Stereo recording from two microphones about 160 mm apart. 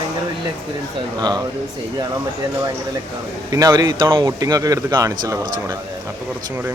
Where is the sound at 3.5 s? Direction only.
25° right (ahead or behind).